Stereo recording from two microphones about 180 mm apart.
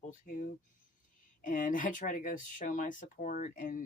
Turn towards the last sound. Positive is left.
turn(degrees=45)  # may be behind; listen again after turning